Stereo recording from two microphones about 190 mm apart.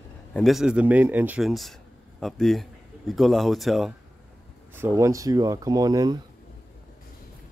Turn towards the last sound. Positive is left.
turn(degrees=-20)  # may be behind; listen again after turning